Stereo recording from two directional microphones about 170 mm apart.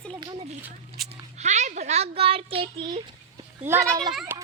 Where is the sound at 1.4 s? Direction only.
45° right (ahead or behind).